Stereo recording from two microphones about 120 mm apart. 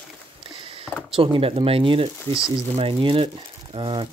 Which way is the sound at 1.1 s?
50° right (ahead or behind).